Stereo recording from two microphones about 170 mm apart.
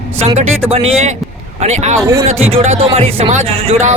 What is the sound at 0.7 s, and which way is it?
Speech, 35° right (ahead or behind).